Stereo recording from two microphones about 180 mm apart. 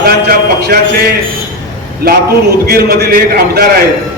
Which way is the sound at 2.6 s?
60° right (ahead or behind).